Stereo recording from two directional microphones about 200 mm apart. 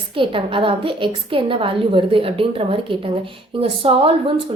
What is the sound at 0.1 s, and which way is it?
A woman's voice, 25° right (ahead or behind).